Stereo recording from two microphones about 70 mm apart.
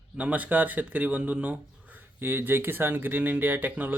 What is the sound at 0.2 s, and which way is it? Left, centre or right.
A man's voice, right.